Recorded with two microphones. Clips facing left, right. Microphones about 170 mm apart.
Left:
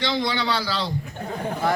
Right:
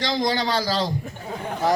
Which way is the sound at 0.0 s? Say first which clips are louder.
Right 1 dB; 40° right (ahead or behind).